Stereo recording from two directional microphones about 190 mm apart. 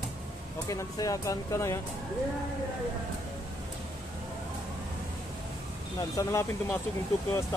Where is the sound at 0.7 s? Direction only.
15° left (ahead or behind).